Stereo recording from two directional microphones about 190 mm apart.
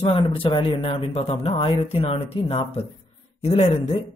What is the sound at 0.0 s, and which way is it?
Speech, 30° left (ahead or behind).